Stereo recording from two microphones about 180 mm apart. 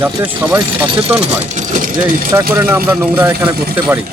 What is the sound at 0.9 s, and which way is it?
Speech, 30° right (ahead or behind).